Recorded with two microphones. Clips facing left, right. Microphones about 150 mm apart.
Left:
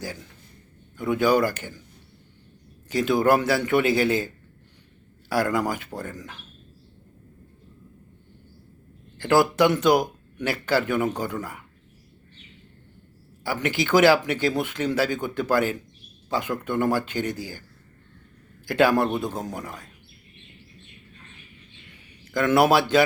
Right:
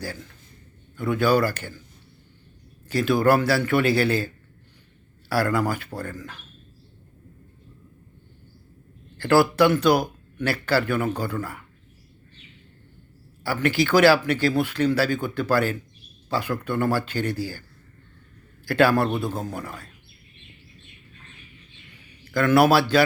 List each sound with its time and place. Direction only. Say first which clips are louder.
0.0 s speech: right 1 dB; 15° left (ahead or behind)
2.9 s speech: right 1 dB; 20° left (ahead or behind)
5.3 s speech: right 1 dB; 20° left (ahead or behind)
9.1 s speech: right 1 dB; 15° left (ahead or behind)
13.4 s speech: right 3 dB; 20° left (ahead or behind)
18.6 s speech: even; 15° left (ahead or behind)
22.2 s a man's voice: right 2 dB; 20° left (ahead or behind)